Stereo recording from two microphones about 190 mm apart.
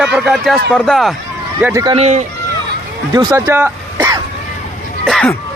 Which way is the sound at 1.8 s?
30° right (ahead or behind).